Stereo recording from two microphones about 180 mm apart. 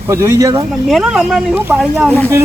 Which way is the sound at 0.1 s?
15° right (ahead or behind).